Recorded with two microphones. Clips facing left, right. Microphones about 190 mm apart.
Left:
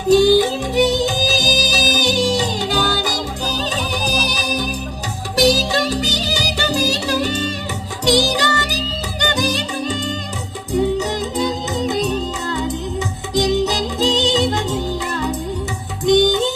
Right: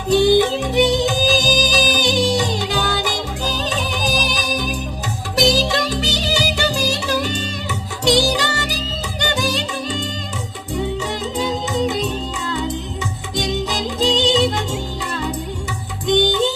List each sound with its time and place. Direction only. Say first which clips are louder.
0.1 s music: left 2 dB; 40° left (ahead or behind)
5.4 s music: left 2 dB; 40° left (ahead or behind)
11.9 s music: left 3 dB; 40° left (ahead or behind)
16.0 s music: left 3 dB; 40° left (ahead or behind)